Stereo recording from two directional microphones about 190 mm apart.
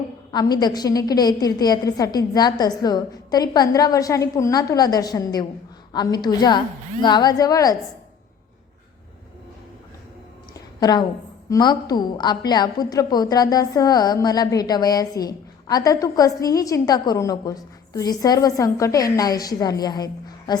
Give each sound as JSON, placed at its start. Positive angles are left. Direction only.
{"t": 0.3, "sound": "a woman's voice", "side_deg": 20}
{"t": 10.5, "sound": "a sound", "side_deg": 20}
{"t": 11.4, "sound": "a woman's voice", "side_deg": 20}